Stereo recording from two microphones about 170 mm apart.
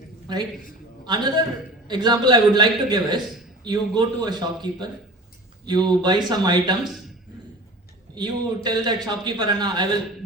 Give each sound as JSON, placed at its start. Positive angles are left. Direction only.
{"t": 0.3, "sound": "a man's voice", "side_deg": -25}
{"t": 5.6, "sound": "a man's voice", "side_deg": -25}
{"t": 8.1, "sound": "a man's voice", "side_deg": -25}